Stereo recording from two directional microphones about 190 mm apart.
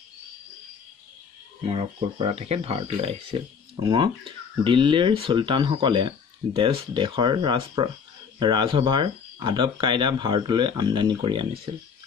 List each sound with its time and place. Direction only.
1.7 s speech: 30° right (ahead or behind)